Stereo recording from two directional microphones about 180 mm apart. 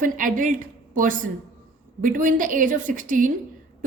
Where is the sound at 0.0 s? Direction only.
50° right (ahead or behind).